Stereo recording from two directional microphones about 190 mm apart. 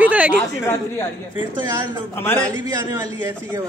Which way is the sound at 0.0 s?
5° right (ahead or behind).